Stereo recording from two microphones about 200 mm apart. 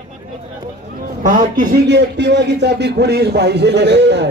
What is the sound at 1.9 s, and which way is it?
A man's voice, 60° right (ahead or behind).